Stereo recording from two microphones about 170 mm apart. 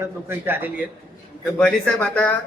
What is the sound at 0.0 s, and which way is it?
Speech, 10° right (ahead or behind).